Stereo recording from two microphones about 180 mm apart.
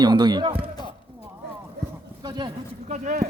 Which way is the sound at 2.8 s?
40° right (ahead or behind).